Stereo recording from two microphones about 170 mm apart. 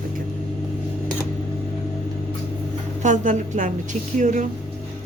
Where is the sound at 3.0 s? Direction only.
45° right (ahead or behind).